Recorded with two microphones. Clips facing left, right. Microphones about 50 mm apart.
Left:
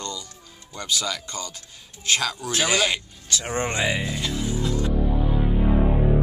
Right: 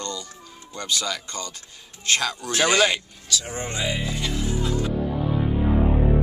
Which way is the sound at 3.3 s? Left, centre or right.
Left.